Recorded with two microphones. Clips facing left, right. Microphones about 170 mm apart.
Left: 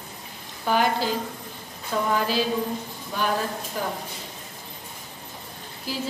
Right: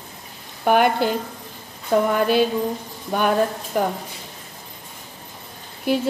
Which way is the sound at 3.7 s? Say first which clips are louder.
Right 9 dB; 60° right (ahead or behind).